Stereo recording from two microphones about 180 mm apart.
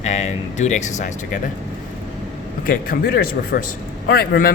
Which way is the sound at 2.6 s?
55° left (ahead or behind).